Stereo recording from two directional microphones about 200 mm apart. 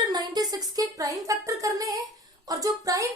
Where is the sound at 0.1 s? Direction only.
20° right (ahead or behind).